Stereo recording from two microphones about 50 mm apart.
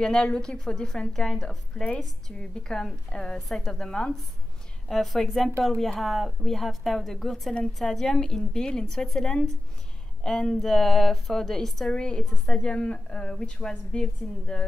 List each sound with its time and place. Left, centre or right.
0.0 s a woman's voice: centre
4.8 s a woman's voice: centre
12.6 s a woman's voice: left